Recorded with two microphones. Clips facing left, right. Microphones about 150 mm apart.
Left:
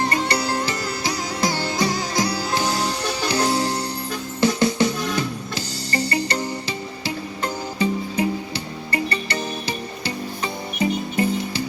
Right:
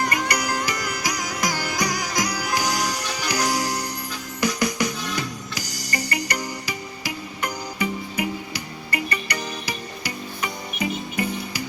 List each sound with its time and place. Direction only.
0.0 s music: 25° left (ahead or behind)